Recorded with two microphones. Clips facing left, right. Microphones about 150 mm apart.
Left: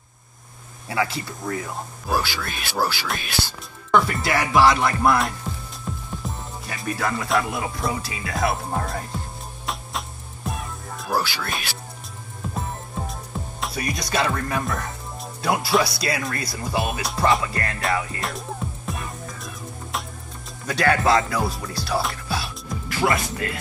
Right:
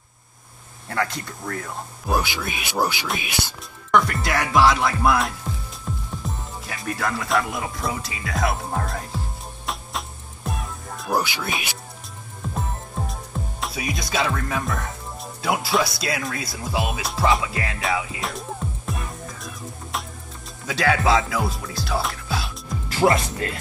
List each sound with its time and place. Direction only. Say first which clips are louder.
0.8 s speech: left 1 dB; 5° left (ahead or behind)
5.9 s music: even; centre (ahead or behind)
6.6 s speech: left 1 dB; centre (ahead or behind)
9.7 s music: even; centre (ahead or behind)
12.5 s speech: right 1 dB; centre (ahead or behind)
18.9 s music: even; centre (ahead or behind)
20.6 s speech: left 1 dB; centre (ahead or behind)
23.0 s speech: right 4 dB; 30° right (ahead or behind)